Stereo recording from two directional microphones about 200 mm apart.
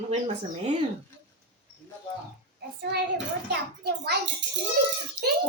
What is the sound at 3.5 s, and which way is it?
Speech, 55° right (ahead or behind).